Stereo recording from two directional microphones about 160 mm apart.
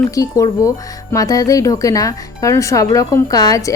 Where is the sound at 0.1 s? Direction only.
20° left (ahead or behind).